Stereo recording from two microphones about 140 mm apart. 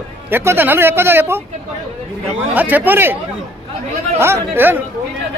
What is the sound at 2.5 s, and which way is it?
Speech, 10° right (ahead or behind).